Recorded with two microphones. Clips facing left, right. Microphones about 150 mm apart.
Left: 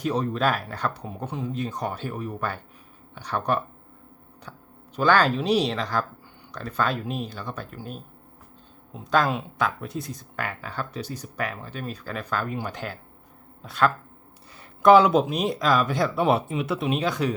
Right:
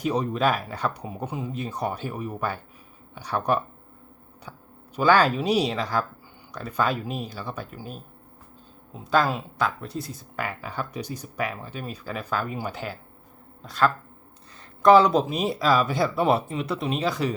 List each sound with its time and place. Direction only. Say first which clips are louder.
0.0 s speech: right 1 dB; 10° right (ahead or behind)
4.9 s speech: right 1 dB; 10° right (ahead or behind)